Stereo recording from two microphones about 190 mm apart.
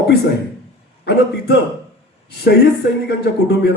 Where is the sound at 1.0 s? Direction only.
60° left (ahead or behind).